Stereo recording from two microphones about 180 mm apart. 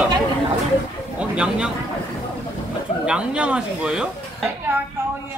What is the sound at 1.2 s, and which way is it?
Speech, 5° right (ahead or behind).